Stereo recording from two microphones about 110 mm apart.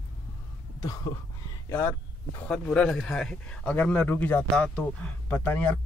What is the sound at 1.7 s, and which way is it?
Speech, 25° left (ahead or behind).